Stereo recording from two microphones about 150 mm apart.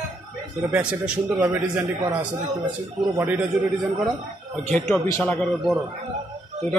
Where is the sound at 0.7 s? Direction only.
5° right (ahead or behind).